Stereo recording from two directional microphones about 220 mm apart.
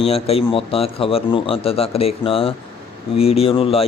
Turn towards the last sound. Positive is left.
turn(degrees=25)  # may be behind; listen again after turning